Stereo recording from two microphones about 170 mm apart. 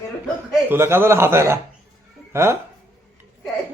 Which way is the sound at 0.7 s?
15° right (ahead or behind).